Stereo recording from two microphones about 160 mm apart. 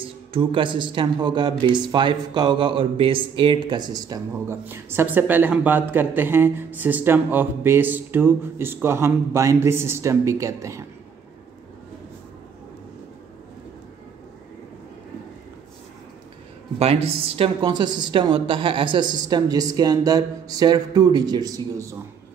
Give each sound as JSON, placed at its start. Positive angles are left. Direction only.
{"t": 0.0, "sound": "a man's voice", "side_deg": -35}
{"t": 16.7, "sound": "a woman's voice", "side_deg": -40}